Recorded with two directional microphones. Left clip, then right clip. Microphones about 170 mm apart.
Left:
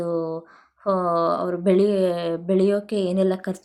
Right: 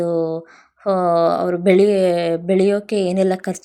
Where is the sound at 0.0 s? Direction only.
15° right (ahead or behind).